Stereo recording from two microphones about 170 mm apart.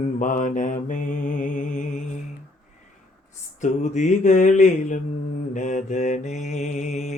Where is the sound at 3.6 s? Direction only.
45° left (ahead or behind).